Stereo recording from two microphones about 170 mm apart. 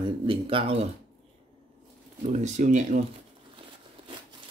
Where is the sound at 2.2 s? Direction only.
45° right (ahead or behind).